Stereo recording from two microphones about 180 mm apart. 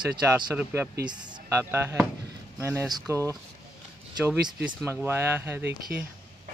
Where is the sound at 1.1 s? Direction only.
25° right (ahead or behind).